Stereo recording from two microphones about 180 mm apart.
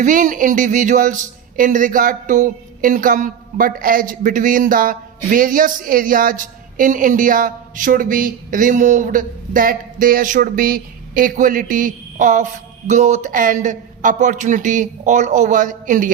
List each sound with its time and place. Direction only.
0.0 s speech: 45° right (ahead or behind)